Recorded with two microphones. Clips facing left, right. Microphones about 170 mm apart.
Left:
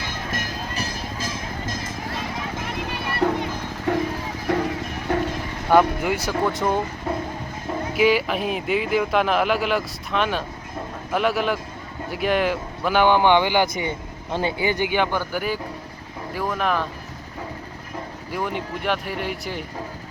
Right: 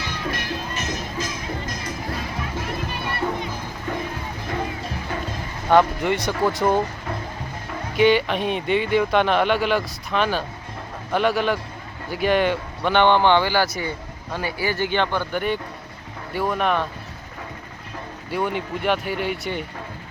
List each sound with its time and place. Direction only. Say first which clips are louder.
0.0 s music: right 1 dB; 45° left (ahead or behind); by 1.9 s 25° left (ahead or behind)
3.2 s music: left 6 dB; 70° left (ahead or behind)
4.5 s music: left 5 dB; 65° left (ahead or behind)
5.7 s speech: even; 5° left (ahead or behind)
7.9 s speech: right 2 dB; 5° left (ahead or behind)
18.3 s speech: right 3 dB; centre (ahead or behind)